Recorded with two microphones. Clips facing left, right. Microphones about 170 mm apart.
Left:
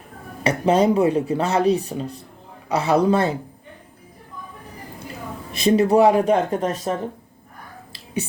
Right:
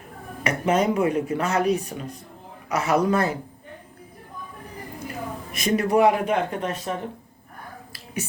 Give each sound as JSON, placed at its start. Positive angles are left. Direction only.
{"t": 0.4, "sound": "a man's voice", "side_deg": 30}
{"t": 5.5, "sound": "speech", "side_deg": 30}